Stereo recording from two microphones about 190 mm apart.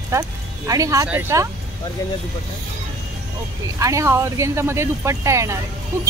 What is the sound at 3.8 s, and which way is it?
Speech, 15° right (ahead or behind).